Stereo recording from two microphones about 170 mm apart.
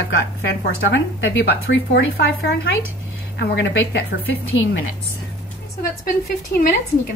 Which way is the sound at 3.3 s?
85° left.